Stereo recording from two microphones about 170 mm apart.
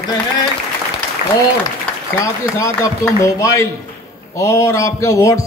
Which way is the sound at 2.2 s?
20° left (ahead or behind).